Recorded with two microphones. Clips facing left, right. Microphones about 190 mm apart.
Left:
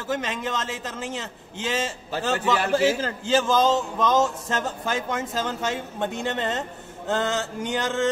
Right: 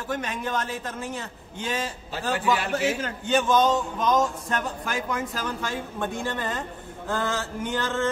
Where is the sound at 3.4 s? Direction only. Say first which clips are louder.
Right 1 dB; 90° left.